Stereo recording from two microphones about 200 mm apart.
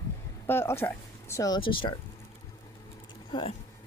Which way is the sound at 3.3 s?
25° left (ahead or behind).